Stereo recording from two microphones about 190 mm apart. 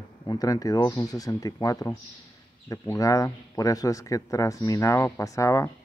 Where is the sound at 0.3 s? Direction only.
20° left (ahead or behind).